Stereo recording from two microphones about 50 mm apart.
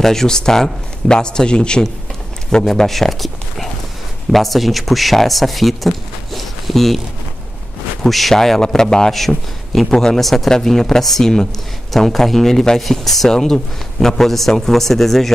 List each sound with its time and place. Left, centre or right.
0.0 s a man's voice: centre
2.6 s speech: centre
8.0 s a man's voice: centre